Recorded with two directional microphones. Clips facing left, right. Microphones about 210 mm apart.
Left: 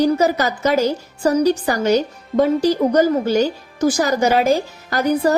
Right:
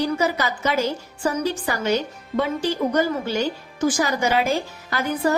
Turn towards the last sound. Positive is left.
turn(degrees=40)  # may be behind; listen again after turning